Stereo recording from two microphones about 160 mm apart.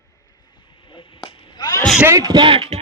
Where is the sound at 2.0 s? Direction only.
20° right (ahead or behind); by 2.8 s 35° right (ahead or behind).